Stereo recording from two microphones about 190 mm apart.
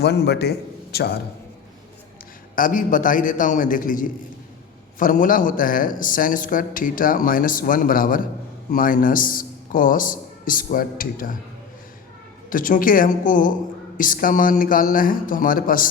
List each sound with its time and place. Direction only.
0.0 s a man's voice: 60° left (ahead or behind)
2.6 s speech: 45° left (ahead or behind)
12.5 s speech: 45° left (ahead or behind)